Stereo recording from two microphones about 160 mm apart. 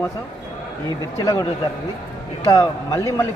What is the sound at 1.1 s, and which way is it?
Speech, 20° left (ahead or behind).